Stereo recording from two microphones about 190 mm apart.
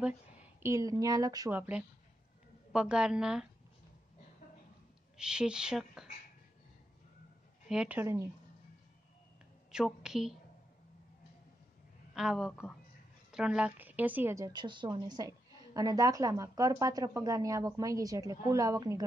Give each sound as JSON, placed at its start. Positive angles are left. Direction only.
{"t": 0.0, "sound": "a woman's voice", "side_deg": -10}
{"t": 5.1, "sound": "speech", "side_deg": -5}
{"t": 7.6, "sound": "a woman's voice", "side_deg": -5}
{"t": 9.7, "sound": "a woman's voice", "side_deg": -5}
{"t": 12.1, "sound": "a woman's voice", "side_deg": -5}